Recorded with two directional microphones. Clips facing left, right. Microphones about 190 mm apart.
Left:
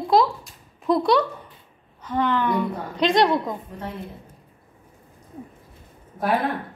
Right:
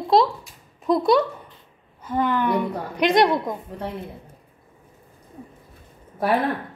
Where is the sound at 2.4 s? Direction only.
15° right (ahead or behind).